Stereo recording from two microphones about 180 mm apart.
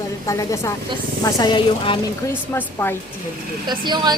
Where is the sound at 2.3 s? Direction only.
10° left (ahead or behind).